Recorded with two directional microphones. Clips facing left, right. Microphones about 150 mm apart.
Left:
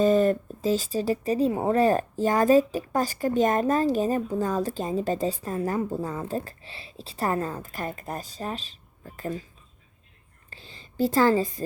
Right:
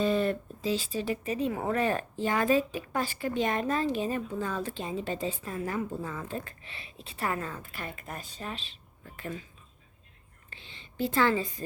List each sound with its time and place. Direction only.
0.0 s speech: 40° left (ahead or behind)
10.5 s a woman's voice: 40° left (ahead or behind)